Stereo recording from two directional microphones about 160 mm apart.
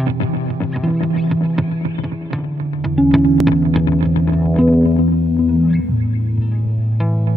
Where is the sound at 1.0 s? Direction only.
Centre (ahead or behind).